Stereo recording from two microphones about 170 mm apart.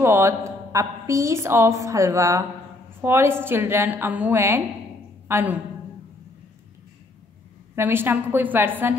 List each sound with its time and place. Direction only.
0.0 s a woman's voice: 15° right (ahead or behind)
7.7 s a woman's voice: 15° right (ahead or behind)